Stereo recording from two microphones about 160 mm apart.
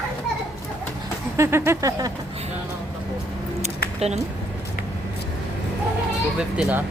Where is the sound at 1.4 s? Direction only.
15° right (ahead or behind).